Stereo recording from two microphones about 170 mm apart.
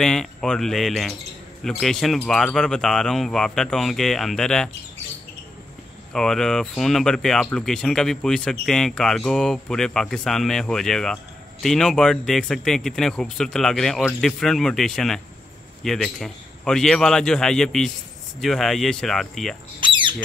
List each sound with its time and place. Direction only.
0.0 s speech: 5° left (ahead or behind)
6.1 s speech: 5° left (ahead or behind)
19.8 s a sound: 30° right (ahead or behind)